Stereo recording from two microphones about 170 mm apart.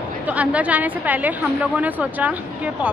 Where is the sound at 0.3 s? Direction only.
10° right (ahead or behind).